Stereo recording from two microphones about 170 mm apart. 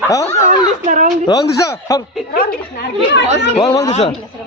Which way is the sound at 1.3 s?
20° left (ahead or behind).